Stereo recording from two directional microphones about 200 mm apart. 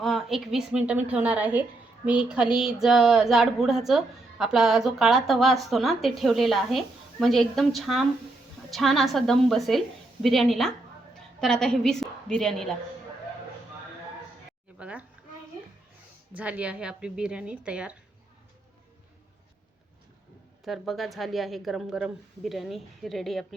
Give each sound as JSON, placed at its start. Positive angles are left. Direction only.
{"t": 0.0, "sound": "a woman's voice", "side_deg": 0}
{"t": 14.8, "sound": "a child's voice", "side_deg": -5}
{"t": 16.4, "sound": "speech", "side_deg": -5}
{"t": 20.7, "sound": "speech", "side_deg": 0}